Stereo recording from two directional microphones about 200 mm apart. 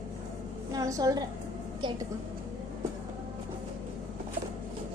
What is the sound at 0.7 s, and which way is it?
Speech, 15° right (ahead or behind).